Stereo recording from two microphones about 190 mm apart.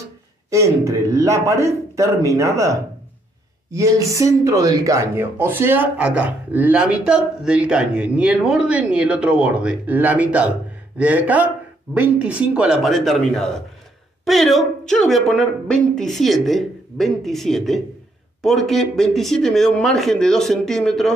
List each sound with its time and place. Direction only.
0.5 s a woman's voice: 15° right (ahead or behind); by 21.1 s centre (ahead or behind)